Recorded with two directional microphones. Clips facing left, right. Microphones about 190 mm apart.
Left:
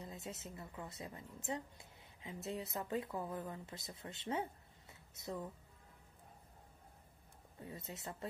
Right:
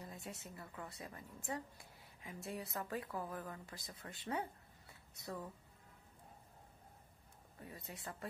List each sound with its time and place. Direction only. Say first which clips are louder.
0.0 s a woman's voice: left 2 dB; 20° left (ahead or behind)
7.5 s a woman's voice: left 3 dB; 25° left (ahead or behind)